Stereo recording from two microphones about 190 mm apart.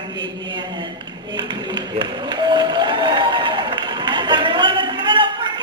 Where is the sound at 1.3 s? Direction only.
25° right (ahead or behind).